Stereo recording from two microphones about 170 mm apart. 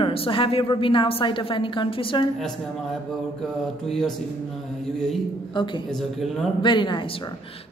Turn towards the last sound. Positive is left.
turn(degrees=30)  # may be behind; listen again after turning